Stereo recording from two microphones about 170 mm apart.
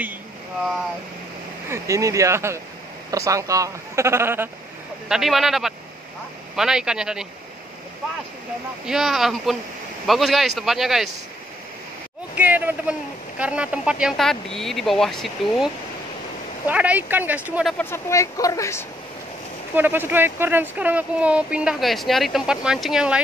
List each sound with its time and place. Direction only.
1.7 s speech: 20° right (ahead or behind)
5.0 s speech: centre (ahead or behind)
8.8 s speech: centre (ahead or behind)
12.4 s speech: 10° right (ahead or behind)
17.7 s speech: 15° left (ahead or behind)
19.7 s speech: 10° right (ahead or behind)